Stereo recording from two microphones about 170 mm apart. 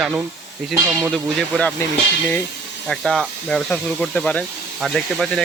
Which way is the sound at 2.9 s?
5° left (ahead or behind).